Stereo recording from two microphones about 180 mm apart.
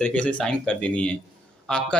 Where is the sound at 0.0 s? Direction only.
5° left (ahead or behind).